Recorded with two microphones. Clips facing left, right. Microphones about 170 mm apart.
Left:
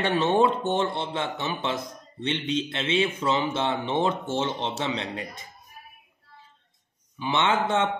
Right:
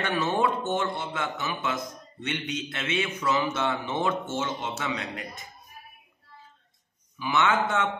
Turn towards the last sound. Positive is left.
turn(degrees=25)  # may be behind; listen again after turning